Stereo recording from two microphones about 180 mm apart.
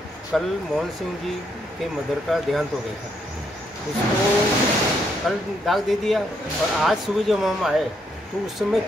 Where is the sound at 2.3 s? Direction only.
Centre (ahead or behind).